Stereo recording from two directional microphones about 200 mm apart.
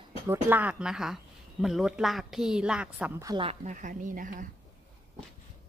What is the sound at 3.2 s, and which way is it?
Speech, 25° right (ahead or behind).